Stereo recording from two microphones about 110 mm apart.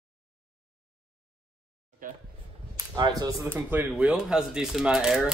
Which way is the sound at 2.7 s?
35° right (ahead or behind).